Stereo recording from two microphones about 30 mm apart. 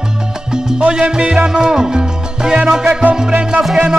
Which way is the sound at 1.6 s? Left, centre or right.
Right.